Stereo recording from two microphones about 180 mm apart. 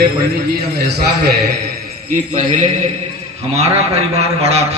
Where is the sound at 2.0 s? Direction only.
45° right (ahead or behind).